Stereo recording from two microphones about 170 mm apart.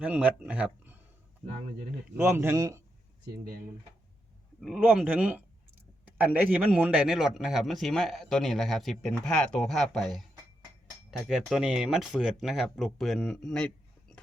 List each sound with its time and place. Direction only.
0.0 s speech: 10° right (ahead or behind)
2.1 s speech: 15° right (ahead or behind)
4.6 s speech: 5° right (ahead or behind)
11.3 s speech: centre (ahead or behind)